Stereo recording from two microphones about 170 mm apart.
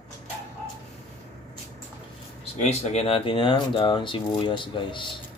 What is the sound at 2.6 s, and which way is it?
Speech, 40° left (ahead or behind).